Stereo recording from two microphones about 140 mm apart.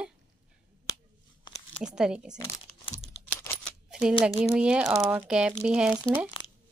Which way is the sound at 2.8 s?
40° left (ahead or behind).